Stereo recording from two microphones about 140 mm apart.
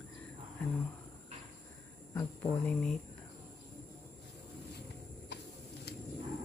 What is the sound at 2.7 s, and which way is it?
Speech, 5° left (ahead or behind).